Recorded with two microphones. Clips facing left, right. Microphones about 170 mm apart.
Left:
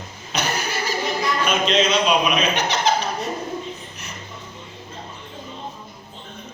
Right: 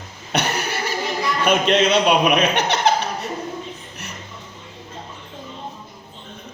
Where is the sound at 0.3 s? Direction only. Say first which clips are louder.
Right 2 dB; 65° right (ahead or behind).